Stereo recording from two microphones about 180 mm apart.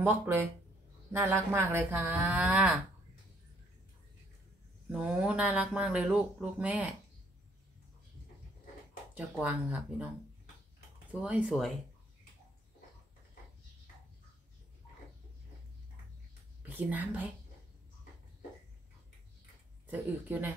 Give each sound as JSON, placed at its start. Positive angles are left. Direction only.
{"t": 0.0, "sound": "speech", "side_deg": -10}
{"t": 4.8, "sound": "speech", "side_deg": -5}
{"t": 9.1, "sound": "speech", "side_deg": -10}
{"t": 11.1, "sound": "speech", "side_deg": -10}
{"t": 16.6, "sound": "speech", "side_deg": -10}
{"t": 19.9, "sound": "speech", "side_deg": -10}